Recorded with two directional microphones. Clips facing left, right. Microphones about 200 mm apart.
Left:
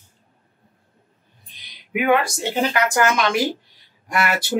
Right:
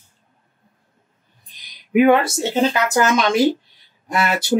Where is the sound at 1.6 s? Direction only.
35° right (ahead or behind).